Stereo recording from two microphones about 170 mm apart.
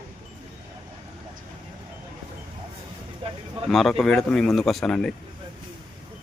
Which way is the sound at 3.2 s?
30° right (ahead or behind).